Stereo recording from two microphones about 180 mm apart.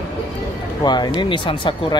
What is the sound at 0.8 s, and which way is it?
Speech, 25° left (ahead or behind).